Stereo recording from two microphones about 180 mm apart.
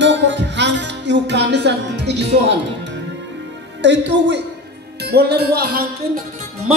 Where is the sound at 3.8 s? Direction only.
80° right.